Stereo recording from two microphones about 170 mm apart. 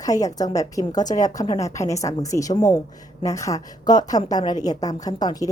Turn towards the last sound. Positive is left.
turn(degrees=20)  # may be behind; listen again after turning